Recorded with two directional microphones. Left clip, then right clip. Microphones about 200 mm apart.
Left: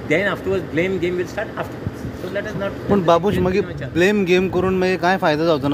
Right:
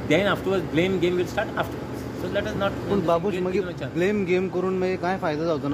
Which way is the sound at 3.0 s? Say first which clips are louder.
Left 8 dB; 40° left (ahead or behind).